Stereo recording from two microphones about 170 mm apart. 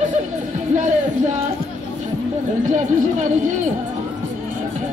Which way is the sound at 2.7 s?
45° right (ahead or behind).